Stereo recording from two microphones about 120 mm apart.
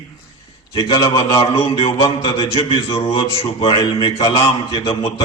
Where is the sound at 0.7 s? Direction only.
40° left (ahead or behind).